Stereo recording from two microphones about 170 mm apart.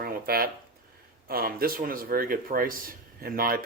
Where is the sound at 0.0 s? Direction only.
60° right (ahead or behind).